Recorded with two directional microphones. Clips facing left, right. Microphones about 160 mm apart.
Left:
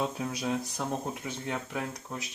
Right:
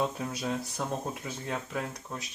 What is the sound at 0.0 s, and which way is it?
Speech, centre (ahead or behind).